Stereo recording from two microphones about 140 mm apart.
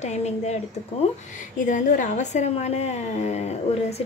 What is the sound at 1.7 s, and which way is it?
Speech, 65° left (ahead or behind).